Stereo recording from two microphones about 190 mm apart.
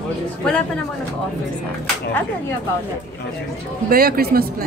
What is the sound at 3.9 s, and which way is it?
Speech, 50° right (ahead or behind).